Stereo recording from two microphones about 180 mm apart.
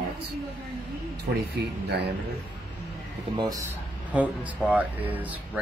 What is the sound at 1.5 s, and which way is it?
Speech, 70° right (ahead or behind).